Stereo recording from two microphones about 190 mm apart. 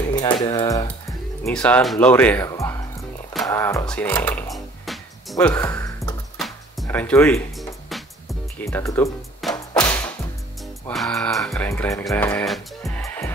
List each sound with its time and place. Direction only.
0.2 s a sound: 20° left (ahead or behind)
1.5 s speech: 5° left (ahead or behind)
3.4 s music: 15° left (ahead or behind)
5.5 s speech: 10° left (ahead or behind)
6.3 s music: centre (ahead or behind)
6.9 s speech: 10° left (ahead or behind)
7.9 s music: centre (ahead or behind)
8.6 s speech: 15° left (ahead or behind)
9.4 s music: 5° left (ahead or behind)
11.5 s speech: 10° left (ahead or behind)
12.1 s music: 10° left (ahead or behind)
13.0 s music: 15° left (ahead or behind)